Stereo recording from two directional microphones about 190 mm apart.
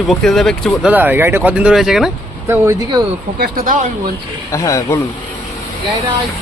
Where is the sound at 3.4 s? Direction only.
45° right (ahead or behind).